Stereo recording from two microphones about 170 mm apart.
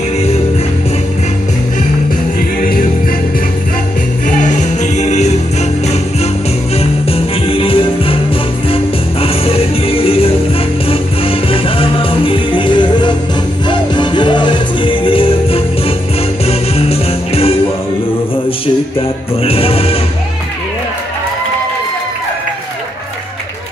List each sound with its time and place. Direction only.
4.3 s music: 50° left (ahead or behind)
6.8 s music: 35° left (ahead or behind)
18.9 s music: 35° left (ahead or behind)